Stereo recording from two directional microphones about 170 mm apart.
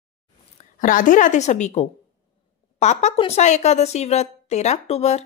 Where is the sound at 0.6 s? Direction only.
50° left (ahead or behind).